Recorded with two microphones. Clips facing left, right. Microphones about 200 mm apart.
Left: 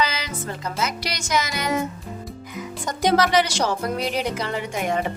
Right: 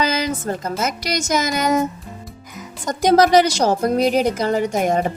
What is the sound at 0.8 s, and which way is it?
A woman's voice, 45° right (ahead or behind).